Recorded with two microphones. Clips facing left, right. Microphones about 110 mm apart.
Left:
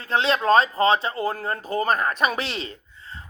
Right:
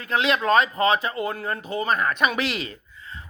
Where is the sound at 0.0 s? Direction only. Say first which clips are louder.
Left 1 dB; 30° left (ahead or behind).